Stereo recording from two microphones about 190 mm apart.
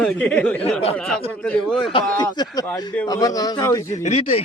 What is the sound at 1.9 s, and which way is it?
Speech, 20° left (ahead or behind).